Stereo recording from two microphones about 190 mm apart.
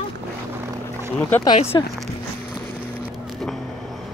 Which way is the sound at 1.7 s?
20° left (ahead or behind).